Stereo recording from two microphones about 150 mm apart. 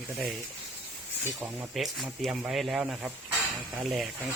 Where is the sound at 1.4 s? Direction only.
5° right (ahead or behind).